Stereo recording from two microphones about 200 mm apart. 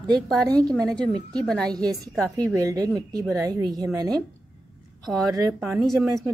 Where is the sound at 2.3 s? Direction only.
15° right (ahead or behind).